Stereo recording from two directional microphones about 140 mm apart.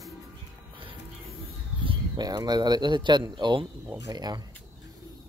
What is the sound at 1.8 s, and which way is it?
Speech, 30° right (ahead or behind).